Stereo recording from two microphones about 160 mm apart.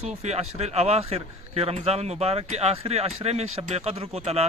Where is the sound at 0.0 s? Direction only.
40° right (ahead or behind).